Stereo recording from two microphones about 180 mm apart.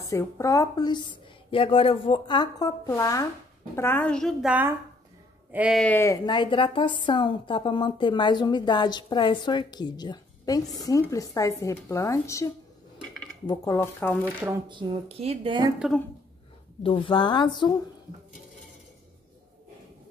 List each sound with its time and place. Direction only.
0.1 s a woman's voice: 15° left (ahead or behind); by 5.9 s centre (ahead or behind)
5.9 s a woman's voice: 20° left (ahead or behind)
13.5 s a woman's voice: 15° left (ahead or behind)
14.7 s speech: 30° right (ahead or behind)
16.8 s a woman's voice: 30° left (ahead or behind)